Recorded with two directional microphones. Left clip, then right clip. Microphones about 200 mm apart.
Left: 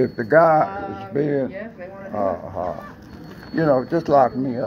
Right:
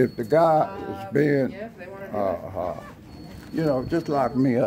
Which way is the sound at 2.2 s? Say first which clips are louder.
Left 3 dB; 20° right (ahead or behind).